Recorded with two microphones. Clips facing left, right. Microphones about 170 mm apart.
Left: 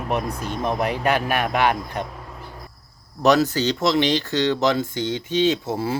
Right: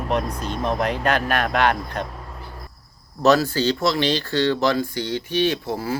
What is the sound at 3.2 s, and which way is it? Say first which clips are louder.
A man's voice: even; 15° left (ahead or behind).